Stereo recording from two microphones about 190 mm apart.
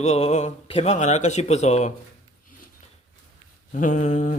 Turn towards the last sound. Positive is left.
turn(degrees=40)  # may be behind; listen again after turning